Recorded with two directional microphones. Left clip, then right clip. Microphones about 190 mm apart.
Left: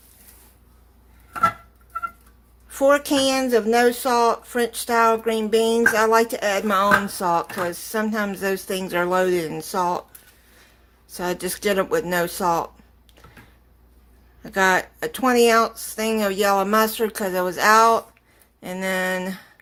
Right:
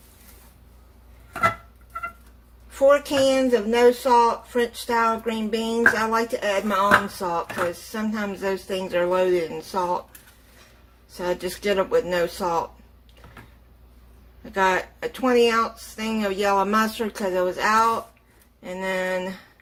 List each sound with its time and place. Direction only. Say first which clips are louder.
1.3 s a sound: left 2 dB; 5° left (ahead or behind)
2.7 s speech: even; 55° left (ahead or behind)
11.2 s speech: left 1 dB; 50° left (ahead or behind)
14.5 s speech: left 2 dB; 50° left (ahead or behind)